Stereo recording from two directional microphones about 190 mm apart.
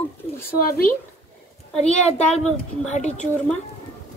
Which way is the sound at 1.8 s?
35° left (ahead or behind).